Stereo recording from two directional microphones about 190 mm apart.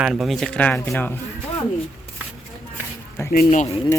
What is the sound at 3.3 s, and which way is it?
Speech, 40° left (ahead or behind).